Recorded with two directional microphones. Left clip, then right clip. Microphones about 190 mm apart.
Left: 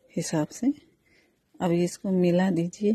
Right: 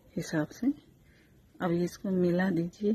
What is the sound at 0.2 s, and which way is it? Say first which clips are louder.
A woman's voice: left 4 dB; 35° left (ahead or behind).